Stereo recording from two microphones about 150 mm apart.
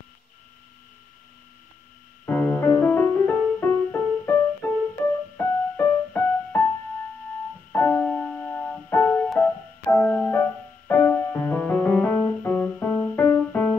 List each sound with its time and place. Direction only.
2.2 s music: 15° left (ahead or behind)
7.7 s music: 15° left (ahead or behind)